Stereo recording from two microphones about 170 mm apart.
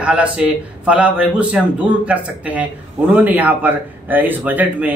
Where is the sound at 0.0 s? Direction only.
5° right (ahead or behind).